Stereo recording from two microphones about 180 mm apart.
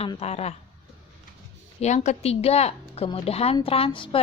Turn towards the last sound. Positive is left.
turn(degrees=30)  # may be behind; listen again after turning